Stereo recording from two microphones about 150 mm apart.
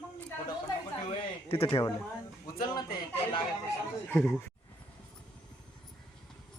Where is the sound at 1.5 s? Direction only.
40° left (ahead or behind).